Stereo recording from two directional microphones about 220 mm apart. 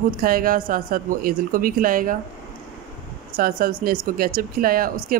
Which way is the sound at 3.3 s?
40° right (ahead or behind).